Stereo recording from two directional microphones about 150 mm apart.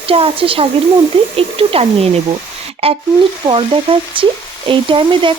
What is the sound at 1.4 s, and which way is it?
Speech, 40° right (ahead or behind).